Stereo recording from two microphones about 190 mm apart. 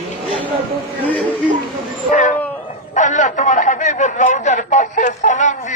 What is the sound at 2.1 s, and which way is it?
A man's voice, 40° left (ahead or behind).